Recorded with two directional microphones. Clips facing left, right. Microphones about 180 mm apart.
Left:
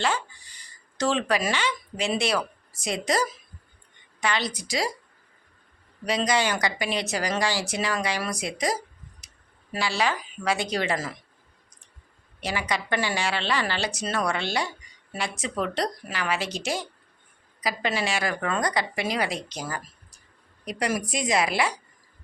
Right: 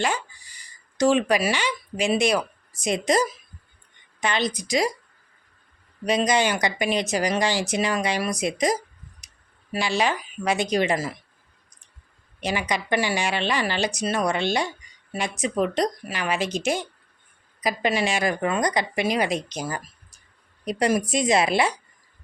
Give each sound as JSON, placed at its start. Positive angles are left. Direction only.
{"t": 0.0, "sound": "speech", "side_deg": -10}
{"t": 6.1, "sound": "speech", "side_deg": -20}
{"t": 9.2, "sound": "a sound", "side_deg": -15}
{"t": 9.7, "sound": "speech", "side_deg": -20}
{"t": 12.4, "sound": "speech", "side_deg": -20}